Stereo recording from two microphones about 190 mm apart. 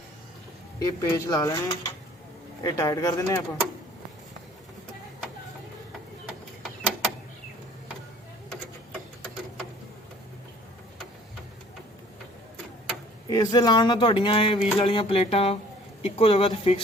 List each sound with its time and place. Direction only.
0.8 s speech: 20° left (ahead or behind)
13.3 s speech: 20° left (ahead or behind)